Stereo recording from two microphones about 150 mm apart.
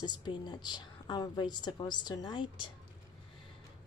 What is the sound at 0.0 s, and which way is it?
A woman's voice, 30° left (ahead or behind).